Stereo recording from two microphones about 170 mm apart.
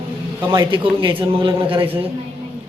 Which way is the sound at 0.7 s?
30° right (ahead or behind).